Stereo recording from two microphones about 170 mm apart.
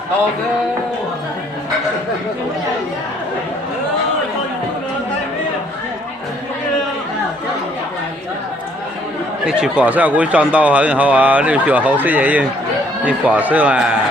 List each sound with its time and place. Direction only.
9.5 s speech: 5° right (ahead or behind)